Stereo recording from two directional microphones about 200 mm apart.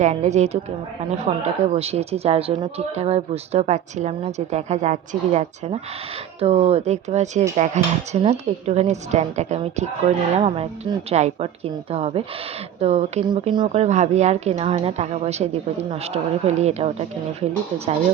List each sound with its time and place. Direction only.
0.0 s a woman's voice: 35° right (ahead or behind)